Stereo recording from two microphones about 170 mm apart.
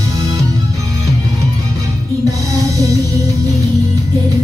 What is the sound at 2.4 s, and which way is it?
Music, 20° right (ahead or behind).